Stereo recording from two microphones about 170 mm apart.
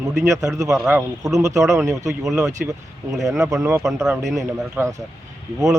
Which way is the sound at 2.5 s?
20° right (ahead or behind).